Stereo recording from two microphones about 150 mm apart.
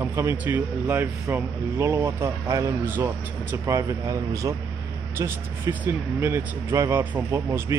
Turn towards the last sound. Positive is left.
turn(degrees=-15)  # may be behind; listen again after turning